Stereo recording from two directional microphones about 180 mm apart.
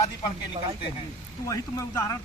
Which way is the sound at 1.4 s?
20° left (ahead or behind).